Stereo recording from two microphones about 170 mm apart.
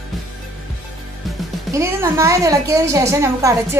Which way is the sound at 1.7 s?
15° right (ahead or behind).